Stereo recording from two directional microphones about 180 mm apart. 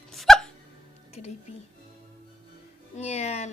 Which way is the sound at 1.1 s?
35° left (ahead or behind).